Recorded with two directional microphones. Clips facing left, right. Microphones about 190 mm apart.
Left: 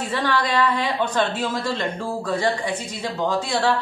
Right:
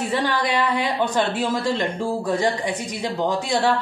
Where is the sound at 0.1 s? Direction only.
15° right (ahead or behind).